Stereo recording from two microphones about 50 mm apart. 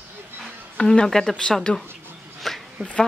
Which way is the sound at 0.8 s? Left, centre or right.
Centre.